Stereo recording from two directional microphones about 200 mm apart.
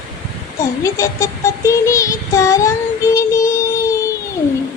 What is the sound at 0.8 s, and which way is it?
Child singing, 15° left (ahead or behind).